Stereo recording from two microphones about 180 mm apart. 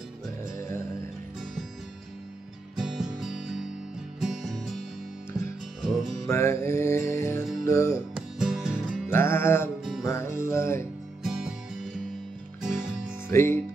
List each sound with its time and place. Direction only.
0.6 s music: 15° left (ahead or behind)
2.8 s music: centre (ahead or behind)
5.8 s music: centre (ahead or behind)
6.2 s music: 15° left (ahead or behind)
8.1 s music: 5° right (ahead or behind)
9.1 s music: 15° left (ahead or behind)
11.2 s music: centre (ahead or behind)
13.3 s music: 15° left (ahead or behind)